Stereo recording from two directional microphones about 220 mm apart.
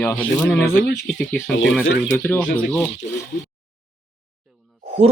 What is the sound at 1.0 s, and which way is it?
Speech, 5° left (ahead or behind).